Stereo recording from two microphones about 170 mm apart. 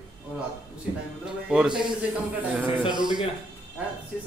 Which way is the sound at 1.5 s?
5° right (ahead or behind).